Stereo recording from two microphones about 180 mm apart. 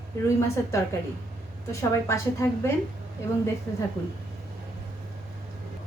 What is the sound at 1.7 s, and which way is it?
Speech, 15° left (ahead or behind).